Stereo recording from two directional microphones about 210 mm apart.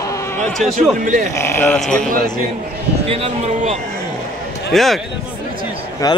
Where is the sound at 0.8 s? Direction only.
40° right (ahead or behind).